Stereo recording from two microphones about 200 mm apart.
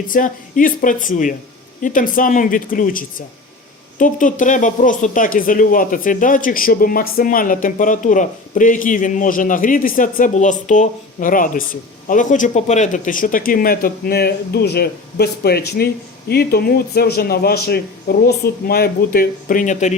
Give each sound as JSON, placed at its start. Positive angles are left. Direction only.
{"t": 0.1, "sound": "a man's voice", "side_deg": 40}